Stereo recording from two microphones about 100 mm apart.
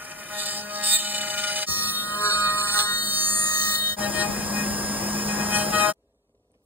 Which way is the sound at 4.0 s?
15° right (ahead or behind).